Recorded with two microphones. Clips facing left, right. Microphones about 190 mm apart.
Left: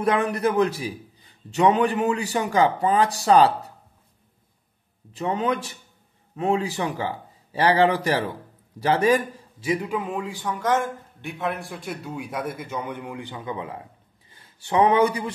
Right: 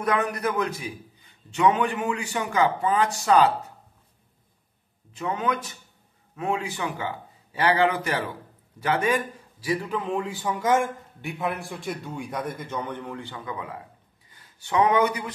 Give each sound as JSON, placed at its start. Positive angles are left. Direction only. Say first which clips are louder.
{"t": 0.0, "sound": "a man's voice", "louder": "left 3 dB", "side_deg": 30}
{"t": 5.1, "sound": "a man's voice", "louder": "left 3 dB", "side_deg": 30}
{"t": 9.6, "sound": "a man's voice", "louder": "left 2 dB", "side_deg": 20}